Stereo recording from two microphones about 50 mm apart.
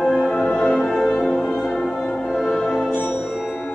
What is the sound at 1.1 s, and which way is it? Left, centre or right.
Music, centre.